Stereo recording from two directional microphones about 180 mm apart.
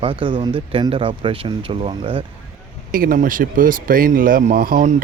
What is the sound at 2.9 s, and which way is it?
Speech, 45° right (ahead or behind).